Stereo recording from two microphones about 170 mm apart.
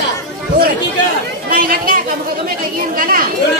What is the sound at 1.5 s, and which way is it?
Chatter, 55° right (ahead or behind).